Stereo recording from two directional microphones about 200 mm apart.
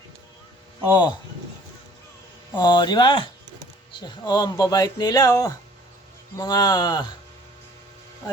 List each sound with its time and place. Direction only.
0.9 s speech: 20° left (ahead or behind)
2.6 s speech: 20° left (ahead or behind)